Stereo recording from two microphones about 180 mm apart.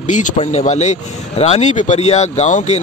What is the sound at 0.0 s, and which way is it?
Speech, 45° left (ahead or behind).